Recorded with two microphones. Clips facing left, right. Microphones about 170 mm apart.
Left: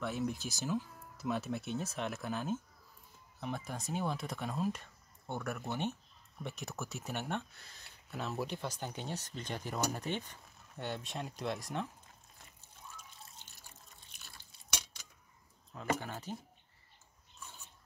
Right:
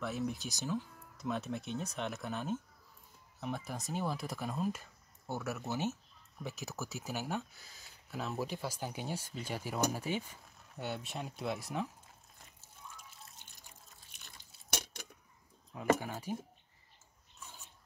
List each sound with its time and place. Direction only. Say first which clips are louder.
0.0 s speech: left 1 dB; centre (ahead or behind)
14.7 s cutlery: right 5 dB; 50° right (ahead or behind)
16.0 s speech: right 3 dB; 10° right (ahead or behind)